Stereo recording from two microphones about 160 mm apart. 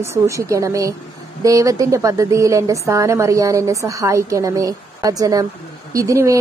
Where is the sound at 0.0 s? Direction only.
15° right (ahead or behind).